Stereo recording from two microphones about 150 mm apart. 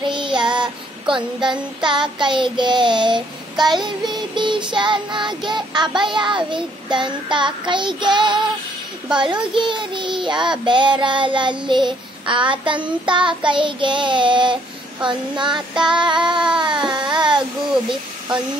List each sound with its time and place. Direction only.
0.0 s child singing: 30° right (ahead or behind)
16.0 s baby cry: 30° right (ahead or behind)
16.9 s a sound: 30° right (ahead or behind)